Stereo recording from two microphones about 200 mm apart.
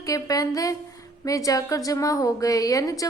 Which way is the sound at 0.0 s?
15° left (ahead or behind).